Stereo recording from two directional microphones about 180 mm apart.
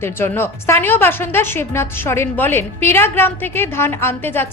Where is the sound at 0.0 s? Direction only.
15° left (ahead or behind).